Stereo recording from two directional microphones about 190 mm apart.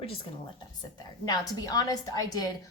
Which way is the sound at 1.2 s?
20° left (ahead or behind).